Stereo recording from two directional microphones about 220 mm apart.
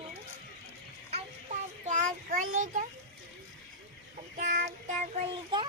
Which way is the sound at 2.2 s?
35° right (ahead or behind).